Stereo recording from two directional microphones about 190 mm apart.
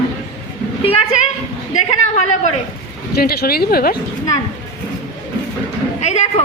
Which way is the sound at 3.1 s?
55° left (ahead or behind).